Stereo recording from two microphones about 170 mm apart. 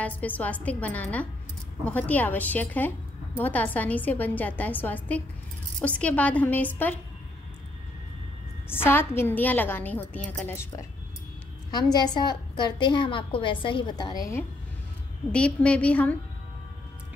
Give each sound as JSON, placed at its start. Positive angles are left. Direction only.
{"t": 0.0, "sound": "a woman's voice", "side_deg": 10}
{"t": 8.8, "sound": "a woman's voice", "side_deg": 15}
{"t": 15.3, "sound": "a woman's voice", "side_deg": 5}